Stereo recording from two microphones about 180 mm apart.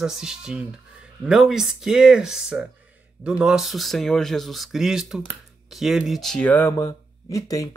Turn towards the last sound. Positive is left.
turn(degrees=20)  # may be behind; listen again after turning